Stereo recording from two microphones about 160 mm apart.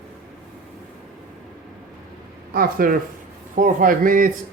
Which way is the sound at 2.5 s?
65° right (ahead or behind).